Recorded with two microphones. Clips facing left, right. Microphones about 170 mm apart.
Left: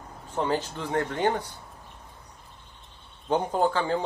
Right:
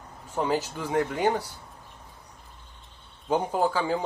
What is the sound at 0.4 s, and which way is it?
Speech, 10° right (ahead or behind).